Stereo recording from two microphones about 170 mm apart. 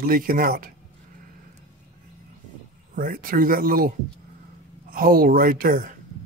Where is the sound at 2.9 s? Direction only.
55° right (ahead or behind).